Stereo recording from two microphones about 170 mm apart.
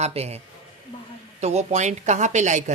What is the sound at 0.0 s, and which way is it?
Speech, 40° right (ahead or behind).